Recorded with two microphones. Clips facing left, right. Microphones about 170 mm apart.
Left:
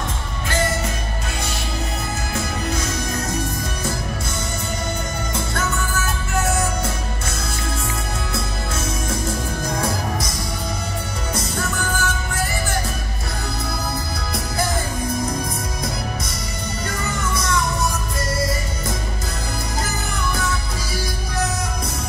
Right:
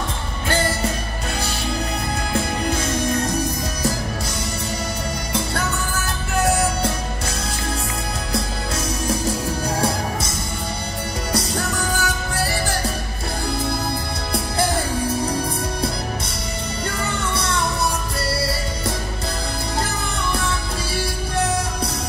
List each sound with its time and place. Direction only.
0.5 s music: 30° right (ahead or behind)
6.4 s music: 35° right (ahead or behind)
11.3 s music: 35° right (ahead or behind)
18.3 s music: 35° right (ahead or behind)
20.3 s music: 30° right (ahead or behind)